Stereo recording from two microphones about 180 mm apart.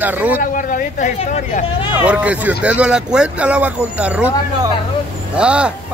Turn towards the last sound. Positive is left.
turn(degrees=-5)  # may be behind; listen again after turning